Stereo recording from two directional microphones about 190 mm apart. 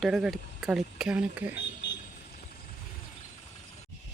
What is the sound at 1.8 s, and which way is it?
Vehicle, 65° left (ahead or behind).